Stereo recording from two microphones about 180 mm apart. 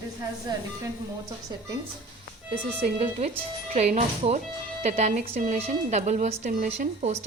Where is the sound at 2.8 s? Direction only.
35° right (ahead or behind).